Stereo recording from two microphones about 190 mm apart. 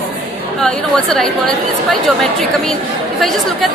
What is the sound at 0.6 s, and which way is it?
Speech, 5° left (ahead or behind).